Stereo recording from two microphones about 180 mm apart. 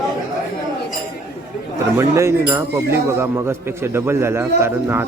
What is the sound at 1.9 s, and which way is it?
Speech, 15° right (ahead or behind).